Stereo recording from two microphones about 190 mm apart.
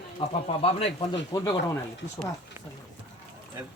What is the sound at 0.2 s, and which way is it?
Speech, 30° left (ahead or behind).